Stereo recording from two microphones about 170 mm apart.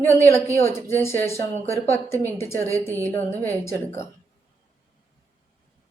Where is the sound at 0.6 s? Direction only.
15° left (ahead or behind).